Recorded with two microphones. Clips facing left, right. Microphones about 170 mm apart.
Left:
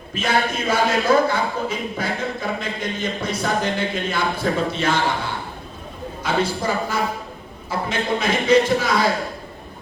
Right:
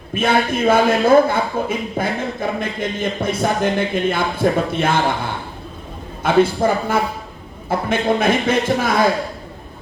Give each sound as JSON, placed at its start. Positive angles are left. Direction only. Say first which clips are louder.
{"t": 0.1, "sound": "a man's voice", "louder": "right 4 dB", "side_deg": -55}